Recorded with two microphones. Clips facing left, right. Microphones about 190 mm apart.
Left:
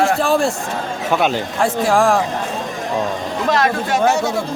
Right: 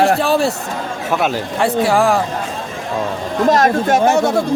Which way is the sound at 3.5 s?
45° right (ahead or behind).